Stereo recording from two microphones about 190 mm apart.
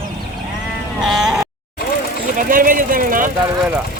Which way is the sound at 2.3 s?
45° right (ahead or behind).